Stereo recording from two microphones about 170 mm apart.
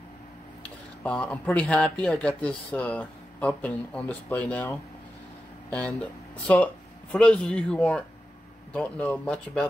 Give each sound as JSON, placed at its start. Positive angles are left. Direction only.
{"t": 1.0, "sound": "speech", "side_deg": 5}